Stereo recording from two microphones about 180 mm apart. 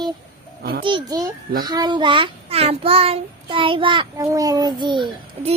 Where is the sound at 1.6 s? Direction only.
20° right (ahead or behind).